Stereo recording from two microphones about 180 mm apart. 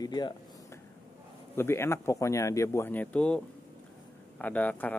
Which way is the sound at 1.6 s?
15° left (ahead or behind).